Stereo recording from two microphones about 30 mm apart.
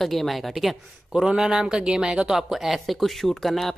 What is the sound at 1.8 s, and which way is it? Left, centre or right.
Speech, right.